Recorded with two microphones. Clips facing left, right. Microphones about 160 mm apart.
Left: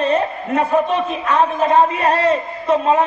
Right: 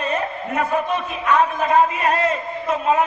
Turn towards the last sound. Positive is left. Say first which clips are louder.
# left 4 dB
turn(degrees=30)  # may be behind; listen again after turning